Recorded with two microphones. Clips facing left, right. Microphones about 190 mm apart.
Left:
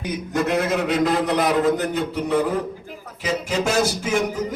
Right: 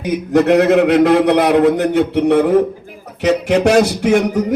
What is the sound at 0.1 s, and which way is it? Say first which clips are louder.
A man's voice: right 10 dB; 65° right (ahead or behind).